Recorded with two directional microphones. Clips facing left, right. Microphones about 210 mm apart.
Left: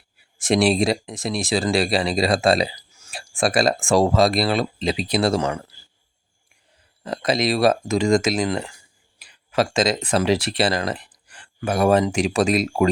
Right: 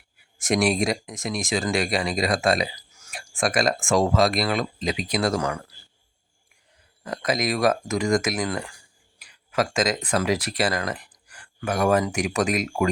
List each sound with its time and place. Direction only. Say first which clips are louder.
0.3 s speech: left 4 dB; 30° left (ahead or behind)
7.0 s speech: left 4 dB; 30° left (ahead or behind)